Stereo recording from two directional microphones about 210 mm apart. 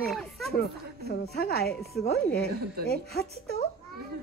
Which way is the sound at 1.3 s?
50° left (ahead or behind).